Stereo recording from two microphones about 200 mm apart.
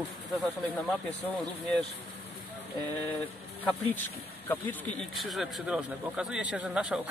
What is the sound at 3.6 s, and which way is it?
Speech, 10° left (ahead or behind).